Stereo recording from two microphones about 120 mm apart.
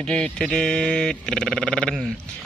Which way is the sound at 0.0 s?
5° left (ahead or behind).